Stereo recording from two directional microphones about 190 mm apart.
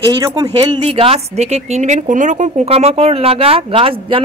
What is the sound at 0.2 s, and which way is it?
A woman's voice, 20° right (ahead or behind).